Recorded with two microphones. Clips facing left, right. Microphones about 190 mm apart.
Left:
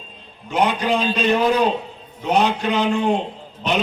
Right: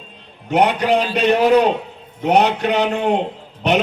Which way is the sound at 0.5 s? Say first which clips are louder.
Right 4 dB; 65° right (ahead or behind).